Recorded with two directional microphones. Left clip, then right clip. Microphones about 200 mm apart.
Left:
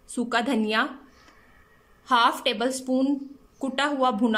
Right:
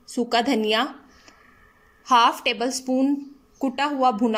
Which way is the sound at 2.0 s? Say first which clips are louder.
Right 3 dB; centre (ahead or behind).